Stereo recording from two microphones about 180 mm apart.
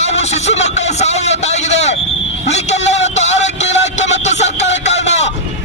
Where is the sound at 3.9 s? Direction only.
40° left (ahead or behind).